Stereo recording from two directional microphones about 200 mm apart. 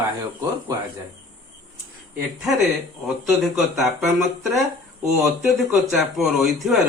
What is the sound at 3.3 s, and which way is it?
Speech, centre (ahead or behind).